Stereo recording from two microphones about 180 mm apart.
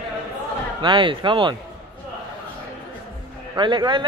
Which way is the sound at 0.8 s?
30° right (ahead or behind).